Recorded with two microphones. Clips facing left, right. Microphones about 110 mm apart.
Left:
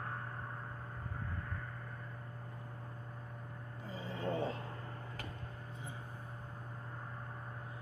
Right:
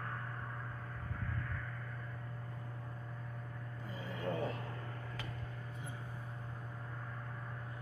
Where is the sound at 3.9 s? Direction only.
30° left (ahead or behind).